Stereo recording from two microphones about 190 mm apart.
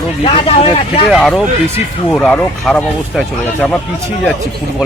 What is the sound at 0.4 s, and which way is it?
Speech, 30° left (ahead or behind).